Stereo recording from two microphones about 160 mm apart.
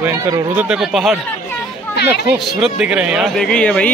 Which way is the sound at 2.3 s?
5° right (ahead or behind).